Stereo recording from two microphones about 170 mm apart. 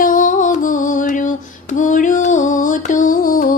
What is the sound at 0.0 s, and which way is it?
Music, 50° left (ahead or behind).